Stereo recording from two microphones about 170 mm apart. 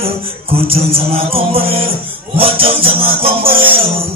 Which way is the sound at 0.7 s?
35° right (ahead or behind).